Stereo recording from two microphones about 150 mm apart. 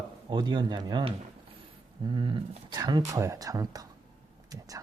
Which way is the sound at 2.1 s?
35° right (ahead or behind).